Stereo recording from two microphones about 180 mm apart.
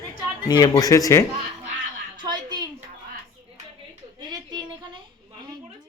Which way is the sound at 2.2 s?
25° right (ahead or behind).